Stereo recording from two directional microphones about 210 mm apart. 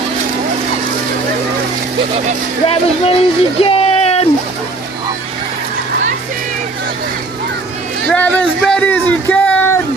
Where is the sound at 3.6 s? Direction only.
30° left (ahead or behind).